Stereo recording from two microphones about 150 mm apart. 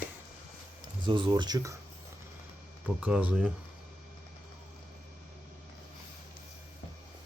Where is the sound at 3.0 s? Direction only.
10° right (ahead or behind).